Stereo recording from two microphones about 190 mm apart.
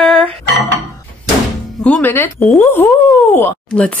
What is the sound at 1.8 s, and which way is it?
Speech, 10° left (ahead or behind).